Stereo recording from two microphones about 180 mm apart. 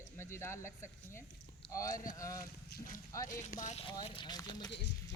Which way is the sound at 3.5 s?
45° left (ahead or behind).